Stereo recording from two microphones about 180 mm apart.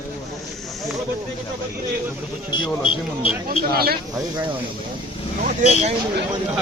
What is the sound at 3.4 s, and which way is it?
Speech, 55° right (ahead or behind).